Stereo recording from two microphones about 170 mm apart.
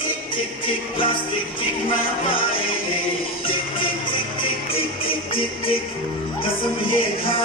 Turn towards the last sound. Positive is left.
turn(degrees=30)  # may be behind; listen again after turning